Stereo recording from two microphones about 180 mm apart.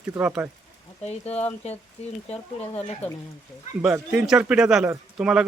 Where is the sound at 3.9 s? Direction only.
5° right (ahead or behind).